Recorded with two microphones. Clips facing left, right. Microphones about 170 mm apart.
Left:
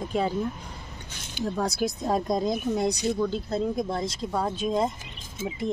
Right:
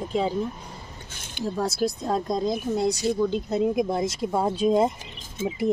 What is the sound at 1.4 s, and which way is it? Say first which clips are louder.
Speech: right 2 dB; centre (ahead or behind).